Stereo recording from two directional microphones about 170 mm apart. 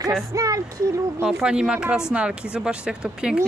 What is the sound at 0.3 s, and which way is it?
Speech, 20° right (ahead or behind).